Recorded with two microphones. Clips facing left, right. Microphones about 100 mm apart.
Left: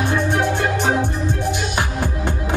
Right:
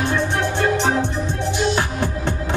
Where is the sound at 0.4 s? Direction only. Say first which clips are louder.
Even; 15° left (ahead or behind).